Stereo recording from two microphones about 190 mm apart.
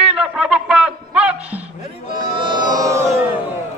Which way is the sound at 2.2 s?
25° right (ahead or behind).